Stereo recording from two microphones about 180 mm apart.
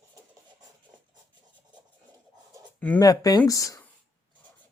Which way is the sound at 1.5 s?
25° right (ahead or behind).